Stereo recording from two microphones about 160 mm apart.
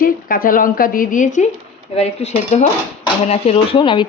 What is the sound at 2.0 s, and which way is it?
Speech, 40° left (ahead or behind).